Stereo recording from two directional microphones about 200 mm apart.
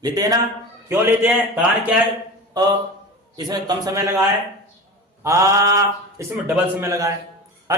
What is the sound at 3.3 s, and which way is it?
Speech, 20° right (ahead or behind).